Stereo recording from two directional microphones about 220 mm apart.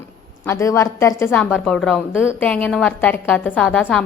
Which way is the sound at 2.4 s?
5° left (ahead or behind).